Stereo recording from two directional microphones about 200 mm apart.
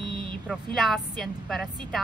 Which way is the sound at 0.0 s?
25° right (ahead or behind).